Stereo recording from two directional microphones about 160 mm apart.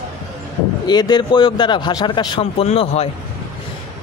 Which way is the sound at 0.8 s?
25° left (ahead or behind).